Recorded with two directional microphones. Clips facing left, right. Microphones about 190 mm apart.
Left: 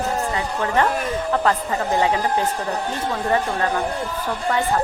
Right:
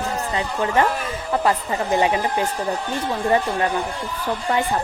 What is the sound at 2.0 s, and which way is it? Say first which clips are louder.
Speech: right 1 dB; 15° right (ahead or behind).